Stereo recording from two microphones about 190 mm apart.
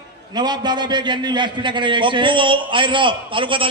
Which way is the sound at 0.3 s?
20° right (ahead or behind).